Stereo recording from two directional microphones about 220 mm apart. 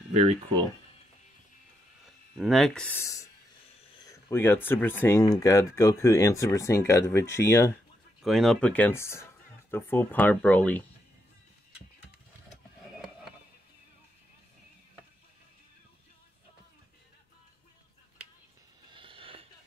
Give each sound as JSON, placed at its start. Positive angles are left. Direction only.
{"t": 0.1, "sound": "speech", "side_deg": -30}
{"t": 2.3, "sound": "speech", "side_deg": 0}
{"t": 8.2, "sound": "speech", "side_deg": 0}
{"t": 18.9, "sound": "a sound", "side_deg": -25}